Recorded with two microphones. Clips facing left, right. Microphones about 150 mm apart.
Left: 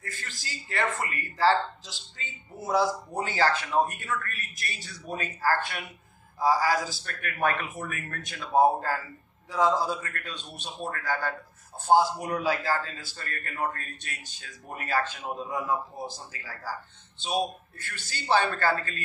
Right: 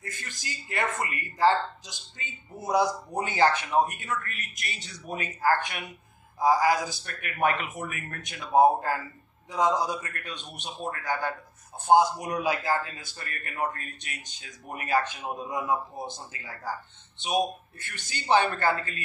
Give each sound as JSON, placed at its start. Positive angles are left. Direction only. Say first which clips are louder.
{"t": 0.0, "sound": "speech", "louder": "right 1 dB", "side_deg": -20}